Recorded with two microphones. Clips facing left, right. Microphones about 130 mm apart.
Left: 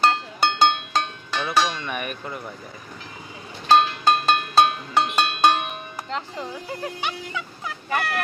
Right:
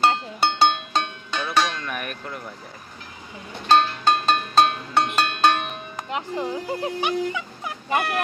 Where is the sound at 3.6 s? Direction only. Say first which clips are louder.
Left 1 dB; 5° left (ahead or behind).